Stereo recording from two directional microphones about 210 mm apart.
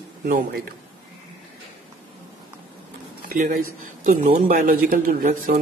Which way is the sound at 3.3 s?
35° right (ahead or behind).